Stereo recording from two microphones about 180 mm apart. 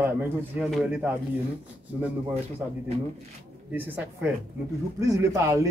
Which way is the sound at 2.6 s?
10° right (ahead or behind).